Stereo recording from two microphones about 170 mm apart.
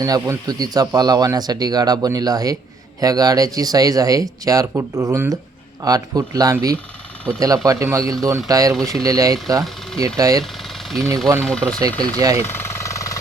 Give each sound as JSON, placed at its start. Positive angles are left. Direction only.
{"t": 0.0, "sound": "a man's voice", "side_deg": -20}
{"t": 10.4, "sound": "engine", "side_deg": 0}
{"t": 11.4, "sound": "speech", "side_deg": 5}
{"t": 11.9, "sound": "a man's voice", "side_deg": -20}
{"t": 12.5, "sound": "engine", "side_deg": 15}